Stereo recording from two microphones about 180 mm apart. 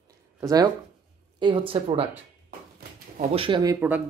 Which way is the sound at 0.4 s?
20° right (ahead or behind).